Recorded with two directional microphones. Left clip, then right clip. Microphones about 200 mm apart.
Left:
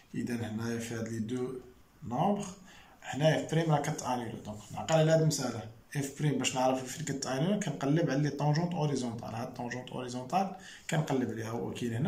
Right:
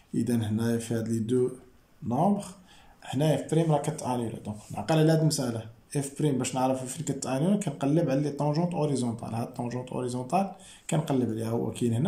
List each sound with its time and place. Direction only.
0.1 s speech: 25° right (ahead or behind)